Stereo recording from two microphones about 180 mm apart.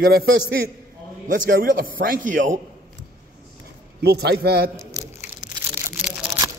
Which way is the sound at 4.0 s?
65° right (ahead or behind).